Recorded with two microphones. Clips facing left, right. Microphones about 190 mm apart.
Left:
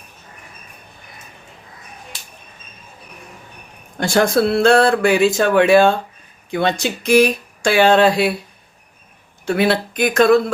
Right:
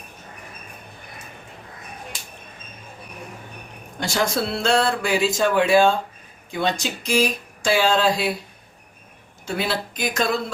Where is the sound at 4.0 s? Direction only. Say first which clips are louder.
Left 8 dB; 55° left (ahead or behind).